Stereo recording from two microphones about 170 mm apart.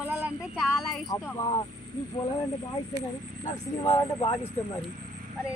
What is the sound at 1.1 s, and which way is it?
Speech, 20° left (ahead or behind).